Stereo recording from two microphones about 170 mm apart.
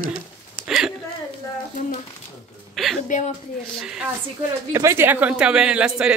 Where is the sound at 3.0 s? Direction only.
45° left (ahead or behind).